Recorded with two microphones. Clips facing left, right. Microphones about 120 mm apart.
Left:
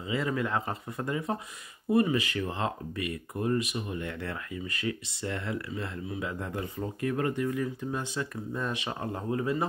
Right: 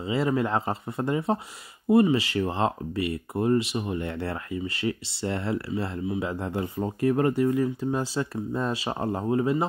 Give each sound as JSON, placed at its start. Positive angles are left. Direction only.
{"t": 0.0, "sound": "speech", "side_deg": -30}